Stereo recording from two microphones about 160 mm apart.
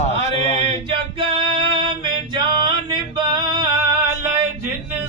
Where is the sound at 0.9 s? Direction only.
35° right (ahead or behind).